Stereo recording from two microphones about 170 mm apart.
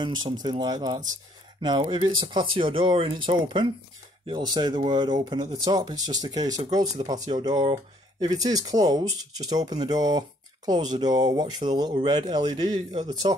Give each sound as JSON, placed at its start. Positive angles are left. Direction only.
{"t": 0.0, "sound": "speech", "side_deg": -25}